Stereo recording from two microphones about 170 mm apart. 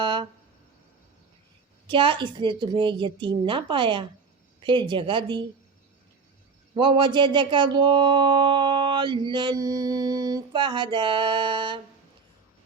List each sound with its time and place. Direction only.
0.0 s a sound: 30° right (ahead or behind)
1.9 s speech: 30° right (ahead or behind)
6.7 s speech: 30° right (ahead or behind)